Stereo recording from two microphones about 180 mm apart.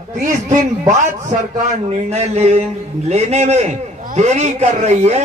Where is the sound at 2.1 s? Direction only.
35° right (ahead or behind).